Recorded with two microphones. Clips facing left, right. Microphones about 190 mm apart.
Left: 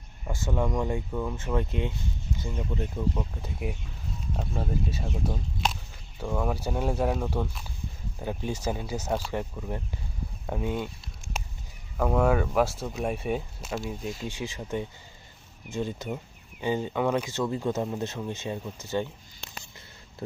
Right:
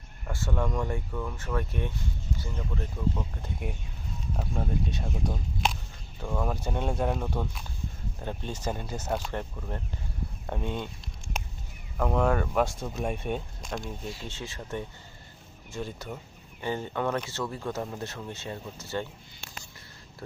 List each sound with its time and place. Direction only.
0.3 s speech: 15° left (ahead or behind)
3.3 s speech: 5° left (ahead or behind)
11.9 s speech: 5° left (ahead or behind)